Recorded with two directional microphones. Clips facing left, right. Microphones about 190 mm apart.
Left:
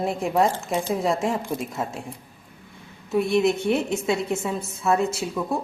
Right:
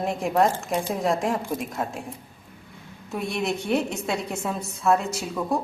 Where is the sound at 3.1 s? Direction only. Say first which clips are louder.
Left 7 dB; centre (ahead or behind).